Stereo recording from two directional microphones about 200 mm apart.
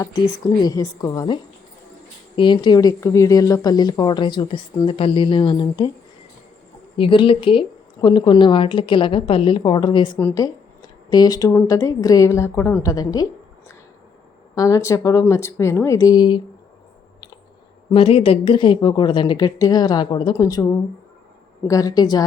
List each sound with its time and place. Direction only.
0.0 s speech: 15° left (ahead or behind)
6.9 s speech: 25° left (ahead or behind)
14.5 s speech: 15° left (ahead or behind)
17.9 s speech: 25° left (ahead or behind)